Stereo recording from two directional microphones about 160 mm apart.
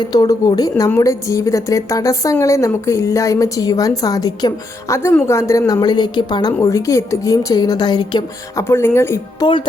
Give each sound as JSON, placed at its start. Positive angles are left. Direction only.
{"t": 0.0, "sound": "a woman's voice", "side_deg": 25}